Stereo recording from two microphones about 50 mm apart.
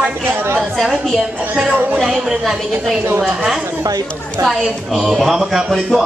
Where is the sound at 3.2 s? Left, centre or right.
Centre.